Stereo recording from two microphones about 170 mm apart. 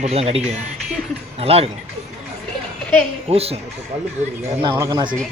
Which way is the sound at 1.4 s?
35° right (ahead or behind).